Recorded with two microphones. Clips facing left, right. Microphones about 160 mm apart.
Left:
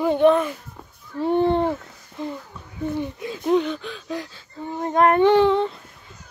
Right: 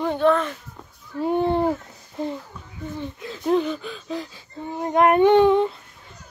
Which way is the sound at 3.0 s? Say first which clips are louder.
Left 4 dB; 15° left (ahead or behind).